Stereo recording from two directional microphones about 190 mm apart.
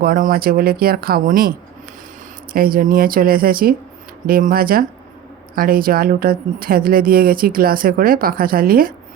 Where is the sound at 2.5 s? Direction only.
50° right (ahead or behind).